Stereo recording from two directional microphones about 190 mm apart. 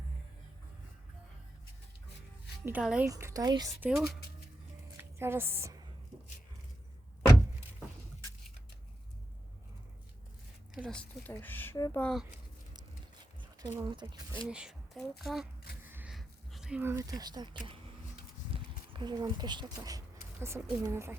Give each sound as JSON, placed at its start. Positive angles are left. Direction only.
{"t": 2.6, "sound": "speech", "side_deg": -5}
{"t": 3.8, "sound": "a woman's voice", "side_deg": -5}
{"t": 10.8, "sound": "speech", "side_deg": 5}
{"t": 13.4, "sound": "speech", "side_deg": -20}
{"t": 14.5, "sound": "speech", "side_deg": -5}
{"t": 15.8, "sound": "a sound", "side_deg": -10}
{"t": 18.5, "sound": "speech", "side_deg": -25}